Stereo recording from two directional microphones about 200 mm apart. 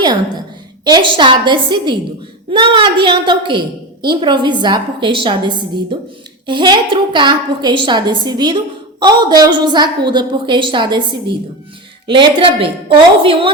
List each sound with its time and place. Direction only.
0.9 s a woman's voice: 25° right (ahead or behind)